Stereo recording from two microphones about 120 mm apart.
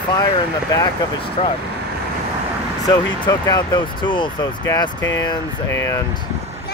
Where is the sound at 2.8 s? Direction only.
30° left (ahead or behind).